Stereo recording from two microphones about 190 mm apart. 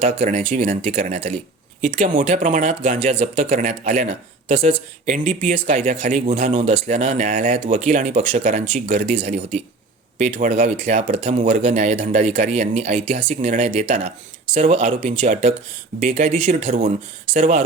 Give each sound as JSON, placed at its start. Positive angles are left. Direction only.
{"t": 0.0, "sound": "speech", "side_deg": -40}